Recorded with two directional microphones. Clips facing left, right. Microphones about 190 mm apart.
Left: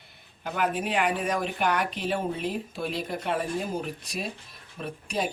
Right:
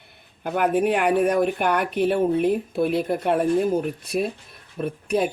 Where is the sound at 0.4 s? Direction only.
55° right (ahead or behind).